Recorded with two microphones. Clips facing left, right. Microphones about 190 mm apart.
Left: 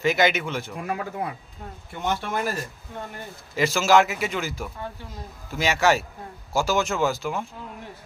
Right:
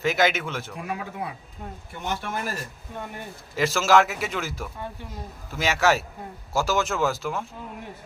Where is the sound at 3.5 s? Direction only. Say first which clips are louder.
Left 1 dB; centre (ahead or behind).